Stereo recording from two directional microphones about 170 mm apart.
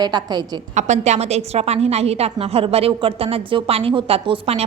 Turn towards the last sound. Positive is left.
turn(degrees=-35)  # may be behind; listen again after turning